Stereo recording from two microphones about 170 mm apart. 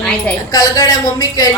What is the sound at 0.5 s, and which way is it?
Speech, 20° left (ahead or behind).